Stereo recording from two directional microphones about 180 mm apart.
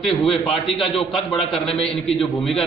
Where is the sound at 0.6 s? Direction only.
Centre (ahead or behind).